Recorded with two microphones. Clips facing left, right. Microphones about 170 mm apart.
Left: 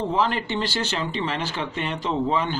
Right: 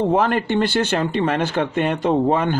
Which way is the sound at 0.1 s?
55° right (ahead or behind).